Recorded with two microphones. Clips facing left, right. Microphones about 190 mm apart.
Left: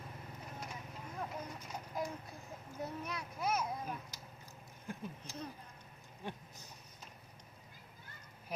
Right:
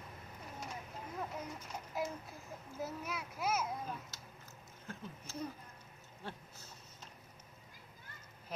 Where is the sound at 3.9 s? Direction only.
15° left (ahead or behind).